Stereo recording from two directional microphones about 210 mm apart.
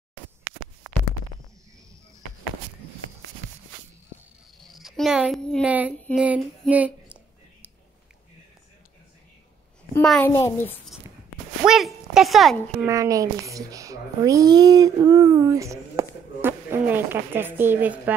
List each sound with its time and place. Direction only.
4.6 s speech: centre (ahead or behind)
6.1 s female singing: 5° right (ahead or behind)
10.0 s a child's voice: 5° left (ahead or behind)
11.6 s speech: centre (ahead or behind)
12.8 s a child's voice: 15° right (ahead or behind)